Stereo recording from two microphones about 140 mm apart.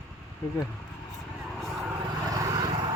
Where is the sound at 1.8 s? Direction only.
20° right (ahead or behind).